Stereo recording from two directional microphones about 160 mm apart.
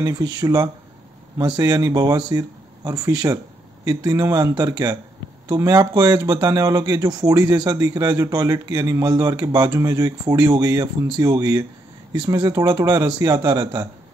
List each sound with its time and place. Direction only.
0.0 s speech: 25° right (ahead or behind)